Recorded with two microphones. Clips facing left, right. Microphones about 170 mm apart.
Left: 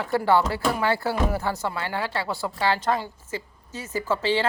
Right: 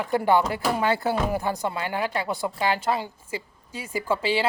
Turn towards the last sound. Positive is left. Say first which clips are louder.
# left 1 dB
turn(degrees=-10)  # may be behind; listen again after turning